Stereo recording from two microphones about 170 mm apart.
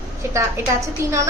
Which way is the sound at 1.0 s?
15° right (ahead or behind).